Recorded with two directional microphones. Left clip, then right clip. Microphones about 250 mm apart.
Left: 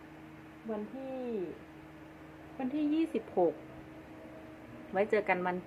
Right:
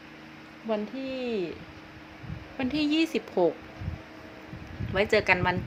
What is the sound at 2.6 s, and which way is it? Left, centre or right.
Speech, right.